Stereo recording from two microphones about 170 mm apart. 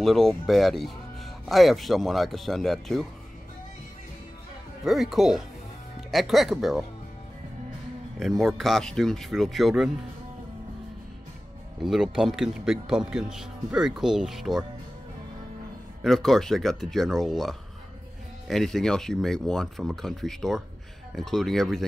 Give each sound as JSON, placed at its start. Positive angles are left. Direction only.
{"t": 0.0, "sound": "speech", "side_deg": 0}
{"t": 4.8, "sound": "speech", "side_deg": 0}
{"t": 8.2, "sound": "speech", "side_deg": 0}
{"t": 11.8, "sound": "speech", "side_deg": 0}
{"t": 16.0, "sound": "speech", "side_deg": 0}